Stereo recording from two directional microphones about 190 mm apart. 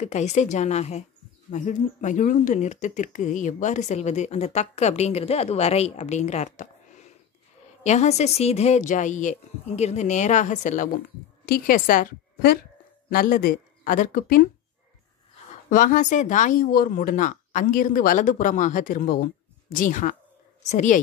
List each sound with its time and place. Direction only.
0.0 s a woman's voice: 35° left (ahead or behind)
15.7 s speech: 45° left (ahead or behind)